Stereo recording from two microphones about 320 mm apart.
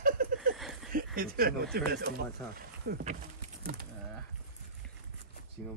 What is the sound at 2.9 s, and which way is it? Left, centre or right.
Speech, right.